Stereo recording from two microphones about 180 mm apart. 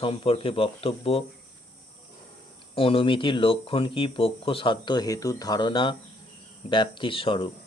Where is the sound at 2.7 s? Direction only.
30° left (ahead or behind).